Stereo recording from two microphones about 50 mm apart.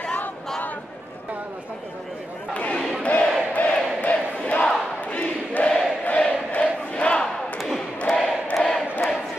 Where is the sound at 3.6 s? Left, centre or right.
Left.